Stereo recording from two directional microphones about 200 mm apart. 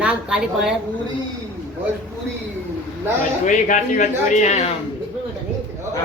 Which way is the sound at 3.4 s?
40° left (ahead or behind).